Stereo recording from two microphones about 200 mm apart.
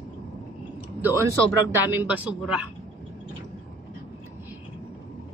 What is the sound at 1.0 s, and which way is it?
A woman's voice, 15° right (ahead or behind).